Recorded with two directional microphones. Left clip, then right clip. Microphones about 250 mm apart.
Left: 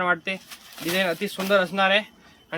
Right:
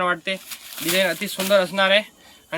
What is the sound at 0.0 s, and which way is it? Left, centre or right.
Speech, centre.